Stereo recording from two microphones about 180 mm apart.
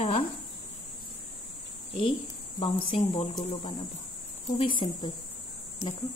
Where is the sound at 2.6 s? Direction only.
30° left (ahead or behind).